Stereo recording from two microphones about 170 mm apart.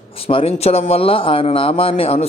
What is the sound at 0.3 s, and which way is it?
A man's voice, 35° left (ahead or behind).